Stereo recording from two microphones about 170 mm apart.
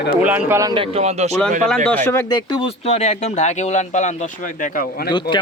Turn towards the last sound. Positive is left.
turn(degrees=60)  # may be behind; listen again after turning